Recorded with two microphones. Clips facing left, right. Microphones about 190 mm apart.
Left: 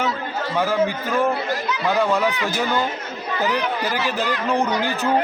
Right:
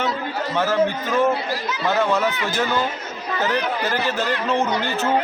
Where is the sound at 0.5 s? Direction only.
10° left (ahead or behind).